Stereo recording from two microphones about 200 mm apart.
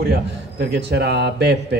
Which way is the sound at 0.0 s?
55° right (ahead or behind).